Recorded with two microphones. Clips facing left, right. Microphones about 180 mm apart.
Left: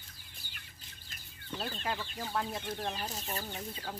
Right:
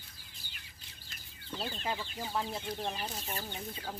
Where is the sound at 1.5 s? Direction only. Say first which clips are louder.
Even; centre (ahead or behind).